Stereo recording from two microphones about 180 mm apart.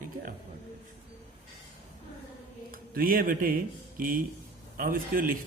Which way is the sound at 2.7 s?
55° right (ahead or behind).